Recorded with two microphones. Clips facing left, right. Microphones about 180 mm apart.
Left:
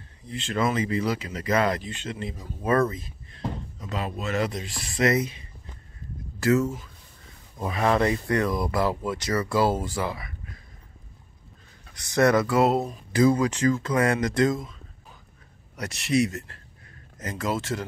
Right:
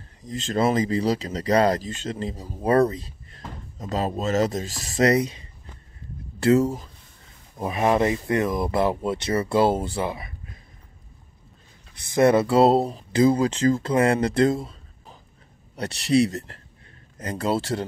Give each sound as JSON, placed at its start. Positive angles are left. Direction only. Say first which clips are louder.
{"t": 0.3, "sound": "speech", "louder": "right 4 dB", "side_deg": -40}
{"t": 6.4, "sound": "speech", "louder": "right 4 dB", "side_deg": -35}
{"t": 7.5, "sound": "speech", "louder": "right 2 dB", "side_deg": -20}
{"t": 12.1, "sound": "speech", "louder": "right 3 dB", "side_deg": -25}